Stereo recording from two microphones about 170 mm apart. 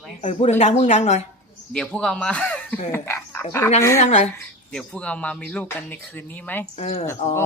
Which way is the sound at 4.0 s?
40° left (ahead or behind).